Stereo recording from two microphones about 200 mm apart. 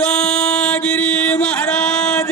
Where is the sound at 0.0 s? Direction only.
5° left (ahead or behind).